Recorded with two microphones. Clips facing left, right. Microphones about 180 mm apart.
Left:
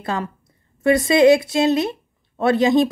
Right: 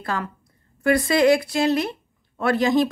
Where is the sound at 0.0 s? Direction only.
25° left (ahead or behind).